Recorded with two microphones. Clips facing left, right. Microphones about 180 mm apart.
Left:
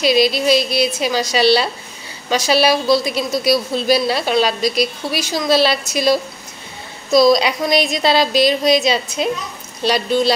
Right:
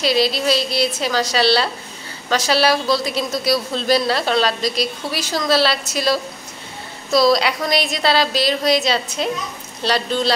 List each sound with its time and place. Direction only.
0.0 s a woman's voice: 15° left (ahead or behind)